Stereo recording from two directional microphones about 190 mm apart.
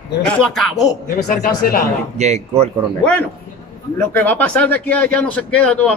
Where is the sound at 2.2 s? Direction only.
35° right (ahead or behind).